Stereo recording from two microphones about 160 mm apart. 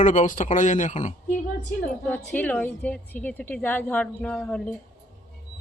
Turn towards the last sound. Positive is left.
turn(degrees=5)  # may be behind; listen again after turning